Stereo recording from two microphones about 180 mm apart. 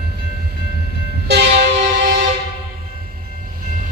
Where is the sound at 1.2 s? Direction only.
65° right (ahead or behind).